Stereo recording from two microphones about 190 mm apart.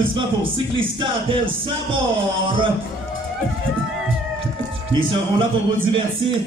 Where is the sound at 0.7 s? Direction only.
30° right (ahead or behind).